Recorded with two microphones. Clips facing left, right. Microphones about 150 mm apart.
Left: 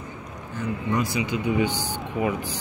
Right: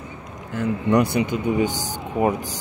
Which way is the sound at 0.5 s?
80° right.